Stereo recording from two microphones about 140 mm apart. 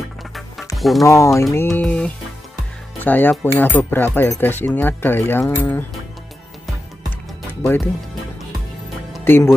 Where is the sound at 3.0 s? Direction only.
15° left (ahead or behind).